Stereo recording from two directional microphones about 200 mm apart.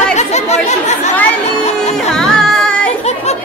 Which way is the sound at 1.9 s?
5° left (ahead or behind).